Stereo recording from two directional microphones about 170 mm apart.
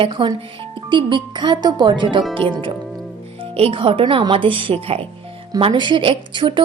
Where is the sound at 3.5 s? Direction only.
30° right (ahead or behind).